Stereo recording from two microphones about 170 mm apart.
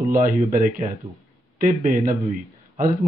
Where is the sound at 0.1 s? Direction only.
50° right (ahead or behind).